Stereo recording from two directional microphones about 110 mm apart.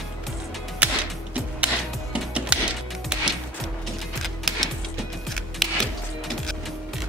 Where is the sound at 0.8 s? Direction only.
10° right (ahead or behind).